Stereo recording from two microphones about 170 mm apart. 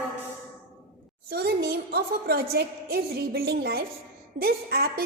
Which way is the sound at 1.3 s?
70° right (ahead or behind).